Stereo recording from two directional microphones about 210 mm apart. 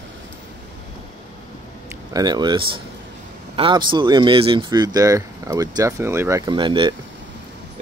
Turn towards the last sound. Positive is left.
turn(degrees=-25)  # may be behind; listen again after turning